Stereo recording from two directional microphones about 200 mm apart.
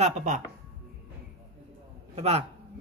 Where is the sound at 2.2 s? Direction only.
30° right (ahead or behind).